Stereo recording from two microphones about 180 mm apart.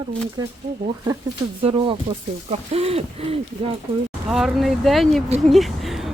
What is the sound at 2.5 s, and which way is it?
Speech, 35° right (ahead or behind).